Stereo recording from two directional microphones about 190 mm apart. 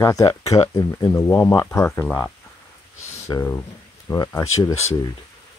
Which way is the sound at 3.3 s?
15° left (ahead or behind).